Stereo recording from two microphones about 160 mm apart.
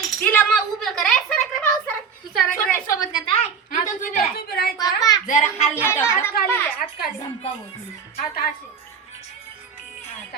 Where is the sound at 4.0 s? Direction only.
70° left (ahead or behind).